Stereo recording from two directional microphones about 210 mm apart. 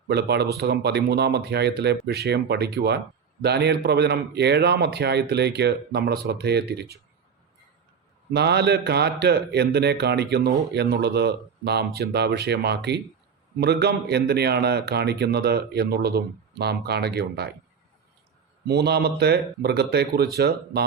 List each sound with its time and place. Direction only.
0.1 s a man's voice: 50° right (ahead or behind)
8.3 s a man's voice: 50° right (ahead or behind)
18.7 s a man's voice: 50° right (ahead or behind)